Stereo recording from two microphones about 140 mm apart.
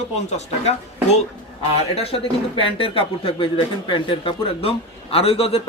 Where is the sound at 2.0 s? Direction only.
45° left (ahead or behind).